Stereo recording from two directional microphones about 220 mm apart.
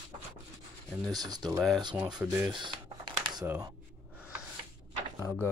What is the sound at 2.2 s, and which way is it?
Speech, 5° right (ahead or behind).